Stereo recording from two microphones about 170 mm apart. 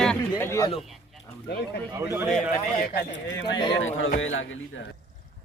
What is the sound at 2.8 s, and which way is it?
Speech, 80° left.